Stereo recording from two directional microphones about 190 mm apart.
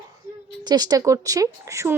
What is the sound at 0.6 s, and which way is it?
A woman's voice, 20° right (ahead or behind).